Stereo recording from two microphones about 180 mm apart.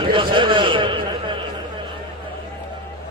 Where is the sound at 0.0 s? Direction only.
30° right (ahead or behind).